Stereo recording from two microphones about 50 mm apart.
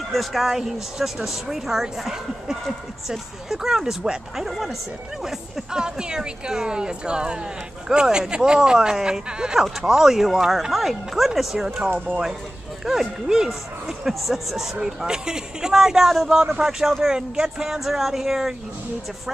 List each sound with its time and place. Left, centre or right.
0.1 s speech: centre
12.8 s speech: centre